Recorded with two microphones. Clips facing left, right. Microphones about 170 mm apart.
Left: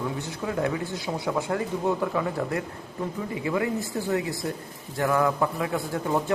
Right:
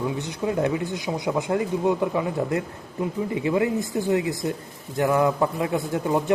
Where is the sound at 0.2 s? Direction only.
20° right (ahead or behind).